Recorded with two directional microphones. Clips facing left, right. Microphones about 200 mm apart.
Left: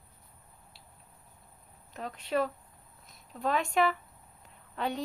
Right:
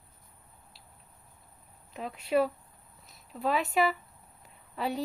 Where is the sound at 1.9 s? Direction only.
5° right (ahead or behind).